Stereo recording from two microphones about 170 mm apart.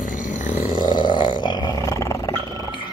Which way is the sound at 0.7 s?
30° left (ahead or behind).